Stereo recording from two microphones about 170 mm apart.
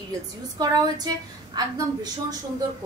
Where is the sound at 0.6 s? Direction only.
25° right (ahead or behind).